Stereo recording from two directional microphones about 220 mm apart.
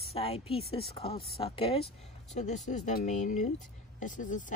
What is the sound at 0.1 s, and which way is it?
Speech, 25° left (ahead or behind).